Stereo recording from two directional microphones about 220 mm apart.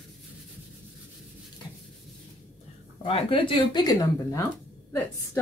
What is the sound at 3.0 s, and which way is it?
A woman's voice, 25° left (ahead or behind).